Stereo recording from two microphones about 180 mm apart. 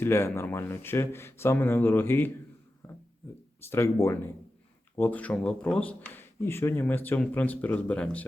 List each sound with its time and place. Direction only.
0.0 s speech: 15° left (ahead or behind)
2.8 s a sound: 15° left (ahead or behind)
3.7 s speech: 15° left (ahead or behind)